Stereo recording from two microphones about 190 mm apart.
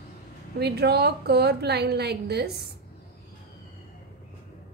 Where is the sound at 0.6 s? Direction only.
60° right (ahead or behind).